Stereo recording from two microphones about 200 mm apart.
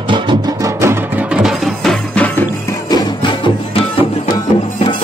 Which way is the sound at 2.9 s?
25° left (ahead or behind).